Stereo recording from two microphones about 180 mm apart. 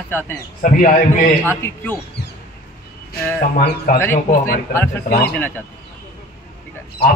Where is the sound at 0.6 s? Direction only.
45° left (ahead or behind).